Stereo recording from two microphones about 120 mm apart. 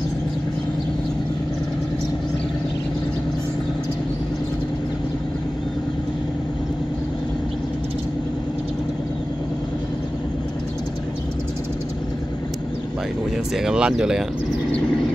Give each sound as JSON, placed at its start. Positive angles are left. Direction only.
{"t": 13.6, "sound": "speech", "side_deg": -5}